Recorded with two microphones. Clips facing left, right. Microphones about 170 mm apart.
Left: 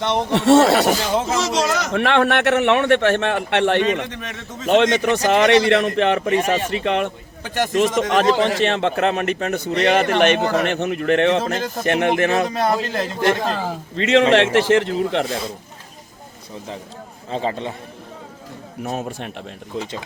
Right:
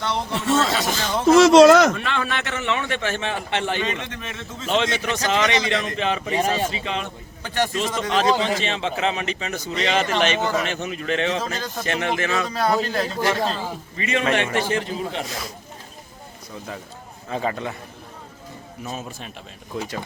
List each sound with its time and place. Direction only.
0.0 s speech: 20° left (ahead or behind)
0.3 s a man's voice: 75° left (ahead or behind)
1.3 s speech: 60° right (ahead or behind)
1.9 s a man's voice: 70° left (ahead or behind)
4.6 s a man's voice: 55° left (ahead or behind)
12.5 s speech: 20° left (ahead or behind)
13.5 s a man's voice: 75° left (ahead or behind)
15.3 s speech: 30° left (ahead or behind)
17.2 s speech: 25° left (ahead or behind)
18.8 s a man's voice: 65° left (ahead or behind)
19.7 s speech: 25° left (ahead or behind)